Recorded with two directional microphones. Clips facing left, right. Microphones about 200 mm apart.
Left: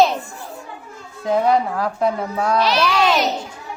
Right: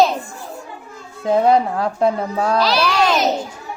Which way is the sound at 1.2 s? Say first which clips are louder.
Right 3 dB; 25° right (ahead or behind).